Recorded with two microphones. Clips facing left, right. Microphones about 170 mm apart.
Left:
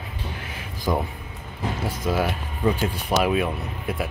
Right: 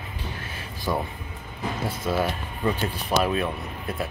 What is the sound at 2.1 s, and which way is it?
Speech, 10° left (ahead or behind).